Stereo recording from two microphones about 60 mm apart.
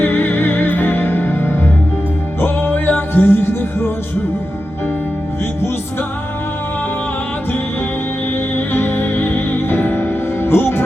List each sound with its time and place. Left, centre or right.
0.0 s music: left
8.5 s music: left